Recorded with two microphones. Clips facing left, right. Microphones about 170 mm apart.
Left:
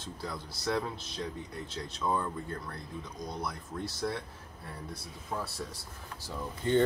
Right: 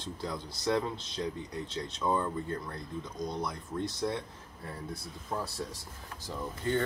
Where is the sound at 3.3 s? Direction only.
5° left (ahead or behind).